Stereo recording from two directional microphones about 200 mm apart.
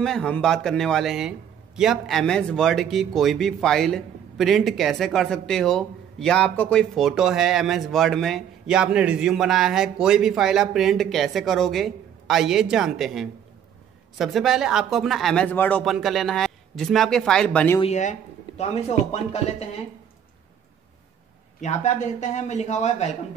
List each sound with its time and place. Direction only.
0.0 s speech: 5° left (ahead or behind)
17.8 s a man's voice: 35° left (ahead or behind)
19.3 s a man's voice: 30° left (ahead or behind)
21.5 s a man's voice: 35° left (ahead or behind)